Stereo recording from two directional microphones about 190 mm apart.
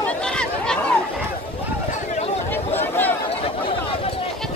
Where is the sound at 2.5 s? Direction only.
10° left (ahead or behind).